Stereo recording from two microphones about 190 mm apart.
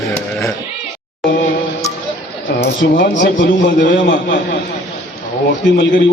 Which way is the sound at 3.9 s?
45° left (ahead or behind).